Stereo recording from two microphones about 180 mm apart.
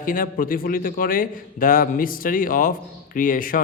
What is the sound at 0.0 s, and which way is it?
Speech, 50° left (ahead or behind).